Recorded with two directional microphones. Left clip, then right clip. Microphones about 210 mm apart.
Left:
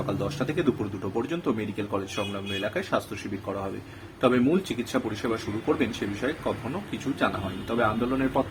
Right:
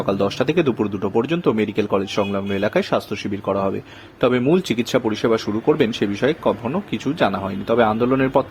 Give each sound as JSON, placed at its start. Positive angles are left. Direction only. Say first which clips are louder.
{"t": 0.0, "sound": "speech", "louder": "right 10 dB", "side_deg": -40}
{"t": 4.2, "sound": "speech", "louder": "right 6 dB", "side_deg": -40}
{"t": 7.7, "sound": "speech", "louder": "right 9 dB", "side_deg": -40}